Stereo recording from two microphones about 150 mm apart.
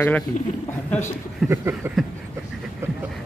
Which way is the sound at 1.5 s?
15° right (ahead or behind).